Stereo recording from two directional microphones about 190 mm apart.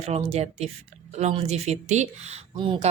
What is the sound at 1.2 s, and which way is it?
Speech, 35° right (ahead or behind).